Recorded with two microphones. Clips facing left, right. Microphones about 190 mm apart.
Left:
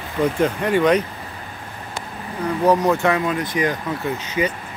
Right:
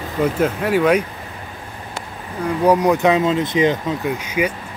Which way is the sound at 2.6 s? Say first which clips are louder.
Right 3 dB; 15° right (ahead or behind).